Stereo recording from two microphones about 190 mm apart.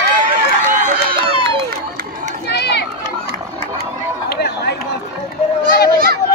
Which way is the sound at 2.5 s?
60° left (ahead or behind).